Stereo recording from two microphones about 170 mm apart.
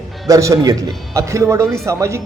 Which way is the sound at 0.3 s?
20° right (ahead or behind).